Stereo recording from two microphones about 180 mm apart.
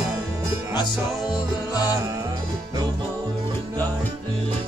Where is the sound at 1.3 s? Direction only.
20° left (ahead or behind).